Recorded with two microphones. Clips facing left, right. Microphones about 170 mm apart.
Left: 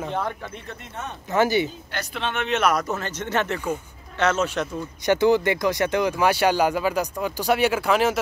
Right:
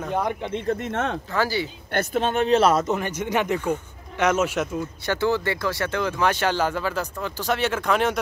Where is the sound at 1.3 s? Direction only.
20° left (ahead or behind).